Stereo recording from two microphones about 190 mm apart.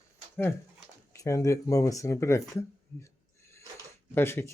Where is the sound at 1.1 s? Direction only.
15° left (ahead or behind).